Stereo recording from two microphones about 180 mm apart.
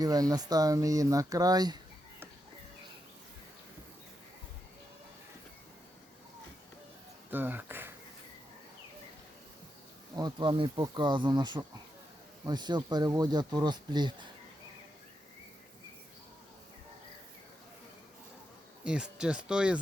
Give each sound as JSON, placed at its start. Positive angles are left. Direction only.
{"t": 0.0, "sound": "speech", "side_deg": -20}
{"t": 7.3, "sound": "speech", "side_deg": -10}
{"t": 10.2, "sound": "speech", "side_deg": -25}
{"t": 18.9, "sound": "speech", "side_deg": -5}